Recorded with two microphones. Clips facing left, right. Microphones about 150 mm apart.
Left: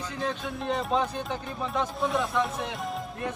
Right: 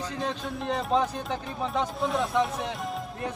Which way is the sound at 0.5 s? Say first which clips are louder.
Right 2 dB; centre (ahead or behind).